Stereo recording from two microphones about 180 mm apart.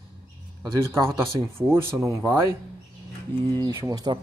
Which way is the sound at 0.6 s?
15° right (ahead or behind).